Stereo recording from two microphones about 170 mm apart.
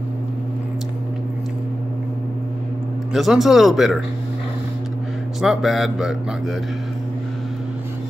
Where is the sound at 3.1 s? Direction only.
Centre (ahead or behind).